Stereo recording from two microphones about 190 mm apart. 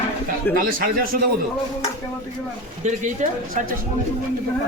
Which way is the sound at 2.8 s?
40° right (ahead or behind).